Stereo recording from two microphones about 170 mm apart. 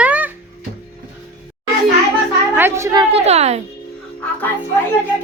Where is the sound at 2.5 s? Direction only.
15° right (ahead or behind).